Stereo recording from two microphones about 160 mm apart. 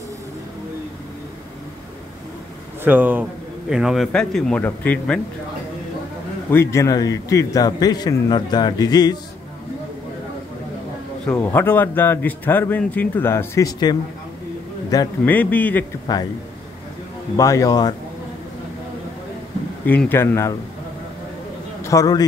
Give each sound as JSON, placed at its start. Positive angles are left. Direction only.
{"t": 2.8, "sound": "speech", "side_deg": -10}
{"t": 6.5, "sound": "a man's voice", "side_deg": 15}
{"t": 11.2, "sound": "a man's voice", "side_deg": 10}
{"t": 15.2, "sound": "a man's voice", "side_deg": 10}
{"t": 17.4, "sound": "a man's voice", "side_deg": 20}
{"t": 19.9, "sound": "a man's voice", "side_deg": 10}
{"t": 21.8, "sound": "a man's voice", "side_deg": 20}